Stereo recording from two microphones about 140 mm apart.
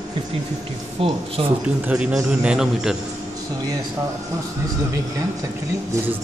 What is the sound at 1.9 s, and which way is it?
A man's voice, 10° right (ahead or behind).